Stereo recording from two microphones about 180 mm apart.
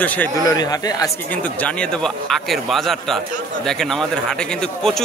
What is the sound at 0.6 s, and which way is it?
Speech, 20° left (ahead or behind).